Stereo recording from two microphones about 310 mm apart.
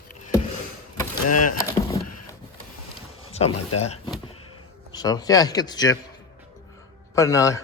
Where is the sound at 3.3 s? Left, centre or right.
Centre.